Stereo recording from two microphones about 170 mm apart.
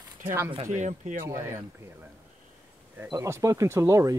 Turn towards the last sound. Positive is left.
turn(degrees=-15)  # may be behind; listen again after turning